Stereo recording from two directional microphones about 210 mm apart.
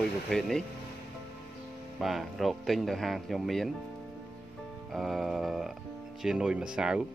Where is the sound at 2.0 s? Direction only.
Centre (ahead or behind).